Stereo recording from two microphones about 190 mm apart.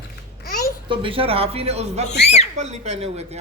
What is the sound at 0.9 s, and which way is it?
Speech, 30° right (ahead or behind).